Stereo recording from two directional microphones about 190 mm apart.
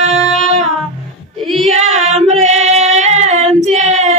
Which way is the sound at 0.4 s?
35° right (ahead or behind).